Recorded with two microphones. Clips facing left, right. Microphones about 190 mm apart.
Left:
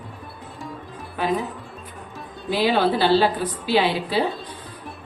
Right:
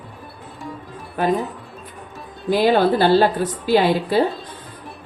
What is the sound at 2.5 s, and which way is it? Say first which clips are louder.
A woman's voice: right 4 dB; 50° right (ahead or behind).